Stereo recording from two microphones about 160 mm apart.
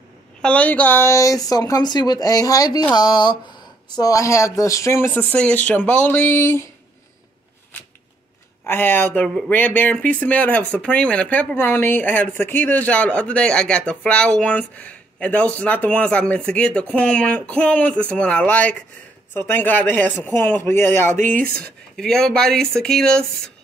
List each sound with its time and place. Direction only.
0.4 s speech: 10° left (ahead or behind)
8.6 s speech: 15° left (ahead or behind)
21.9 s speech: 5° left (ahead or behind)